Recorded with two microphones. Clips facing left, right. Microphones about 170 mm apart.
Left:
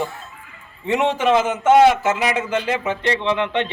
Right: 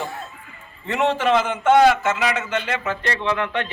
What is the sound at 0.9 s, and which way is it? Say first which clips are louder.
Speech: left 2 dB; 15° left (ahead or behind).